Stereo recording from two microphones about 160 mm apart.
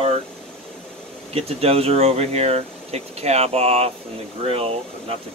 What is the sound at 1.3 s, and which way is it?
Speech, 40° right (ahead or behind).